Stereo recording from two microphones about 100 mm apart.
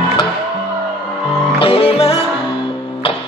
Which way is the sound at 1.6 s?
65° left (ahead or behind).